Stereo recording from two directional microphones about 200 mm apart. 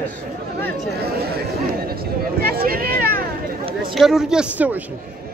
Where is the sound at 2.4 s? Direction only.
45° right (ahead or behind).